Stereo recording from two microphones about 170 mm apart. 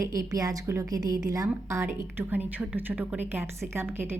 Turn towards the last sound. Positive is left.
turn(degrees=-15)  # may be behind; listen again after turning